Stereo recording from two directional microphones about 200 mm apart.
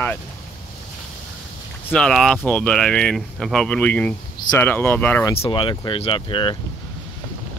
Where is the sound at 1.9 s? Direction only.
5° left (ahead or behind).